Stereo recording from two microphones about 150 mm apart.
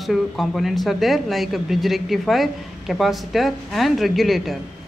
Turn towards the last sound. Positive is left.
turn(degrees=0)  # may be behind; listen again after turning